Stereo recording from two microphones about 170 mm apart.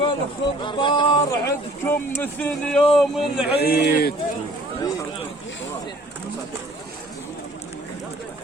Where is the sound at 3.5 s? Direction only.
70° left (ahead or behind).